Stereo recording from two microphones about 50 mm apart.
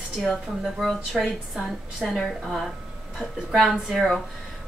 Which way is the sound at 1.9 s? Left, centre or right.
Centre.